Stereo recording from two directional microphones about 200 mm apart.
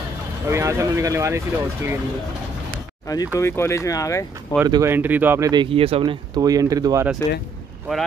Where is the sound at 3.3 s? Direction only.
15° left (ahead or behind).